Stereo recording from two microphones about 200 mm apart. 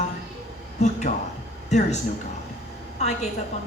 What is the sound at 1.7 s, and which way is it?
A man's voice, 35° left (ahead or behind).